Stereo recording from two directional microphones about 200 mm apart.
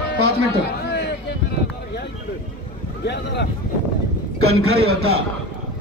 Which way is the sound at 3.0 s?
55° left (ahead or behind).